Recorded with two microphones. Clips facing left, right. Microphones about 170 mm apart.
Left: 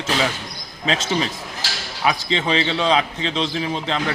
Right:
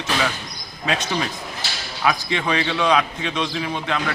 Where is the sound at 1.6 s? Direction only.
90° left.